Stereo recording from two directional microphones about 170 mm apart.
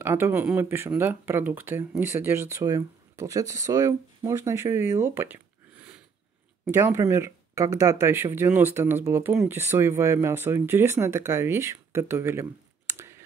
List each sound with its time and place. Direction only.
0.0 s speech: 15° right (ahead or behind)
12.9 s clicking: 15° right (ahead or behind)